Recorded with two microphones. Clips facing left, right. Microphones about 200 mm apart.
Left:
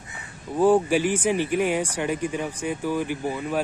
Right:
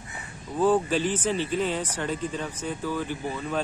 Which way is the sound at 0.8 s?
10° left (ahead or behind).